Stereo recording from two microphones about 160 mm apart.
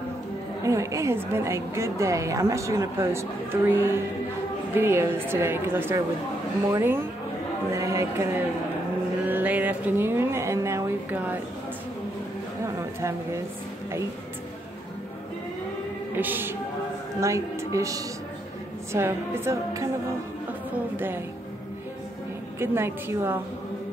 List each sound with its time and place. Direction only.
0.7 s a woman's voice: 20° right (ahead or behind)
9.2 s a sound: 10° right (ahead or behind)
12.6 s a sound: 15° right (ahead or behind)
16.2 s a woman's voice: 10° right (ahead or behind)
20.9 s a woman's voice: 15° right (ahead or behind)
22.6 s a woman's voice: 15° right (ahead or behind)